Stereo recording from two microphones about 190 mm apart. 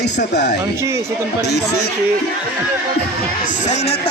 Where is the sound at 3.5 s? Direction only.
40° left (ahead or behind).